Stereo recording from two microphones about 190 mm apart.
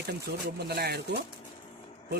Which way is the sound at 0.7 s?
60° right (ahead or behind).